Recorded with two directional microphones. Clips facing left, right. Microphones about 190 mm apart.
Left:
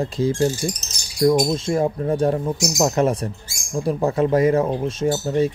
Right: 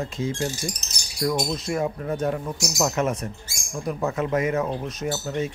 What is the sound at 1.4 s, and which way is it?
Speech, 30° left (ahead or behind).